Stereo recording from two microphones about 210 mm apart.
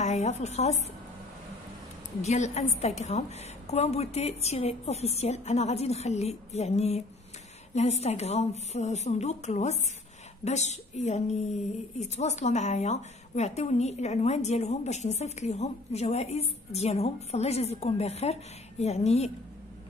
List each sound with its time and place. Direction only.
0.0 s speech: 30° left (ahead or behind)
2.2 s speech: 35° left (ahead or behind)